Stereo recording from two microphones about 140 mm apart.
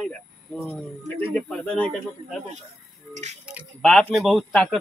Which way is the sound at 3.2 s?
55° right (ahead or behind).